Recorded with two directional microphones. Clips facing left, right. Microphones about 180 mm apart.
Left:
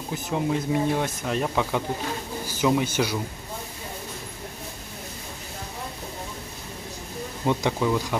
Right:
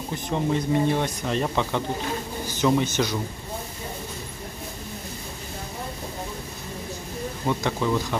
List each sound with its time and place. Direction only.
0.1 s a man's voice: 5° left (ahead or behind)
7.4 s speech: 15° left (ahead or behind)